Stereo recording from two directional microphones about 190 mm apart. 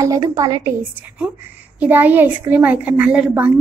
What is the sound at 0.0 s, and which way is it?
A woman's voice, 15° right (ahead or behind).